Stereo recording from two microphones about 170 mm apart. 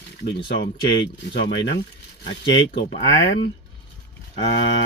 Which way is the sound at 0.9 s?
90° left.